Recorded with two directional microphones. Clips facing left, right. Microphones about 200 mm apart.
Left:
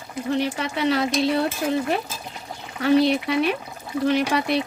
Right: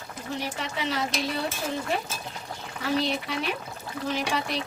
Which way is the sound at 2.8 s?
65° left (ahead or behind).